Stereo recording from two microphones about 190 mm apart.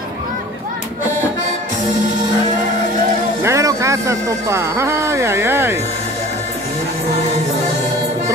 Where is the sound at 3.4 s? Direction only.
15° right (ahead or behind).